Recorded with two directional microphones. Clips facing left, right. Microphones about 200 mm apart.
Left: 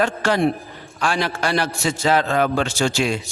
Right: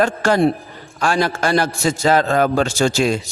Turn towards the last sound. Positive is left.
turn(degrees=-40)  # may be behind; listen again after turning